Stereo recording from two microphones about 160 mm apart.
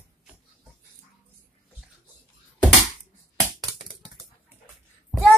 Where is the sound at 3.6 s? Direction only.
25° right (ahead or behind).